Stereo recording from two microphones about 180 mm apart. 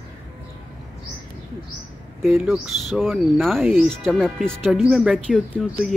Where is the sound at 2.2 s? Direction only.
Centre (ahead or behind).